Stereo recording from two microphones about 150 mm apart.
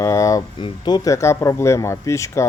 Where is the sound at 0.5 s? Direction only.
30° left (ahead or behind).